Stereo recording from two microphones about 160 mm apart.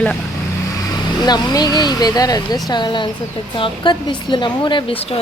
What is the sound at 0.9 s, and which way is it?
Speech, 25° left (ahead or behind).